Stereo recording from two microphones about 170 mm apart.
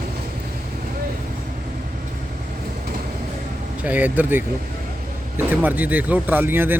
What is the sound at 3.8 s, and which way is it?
Speech, 10° right (ahead or behind).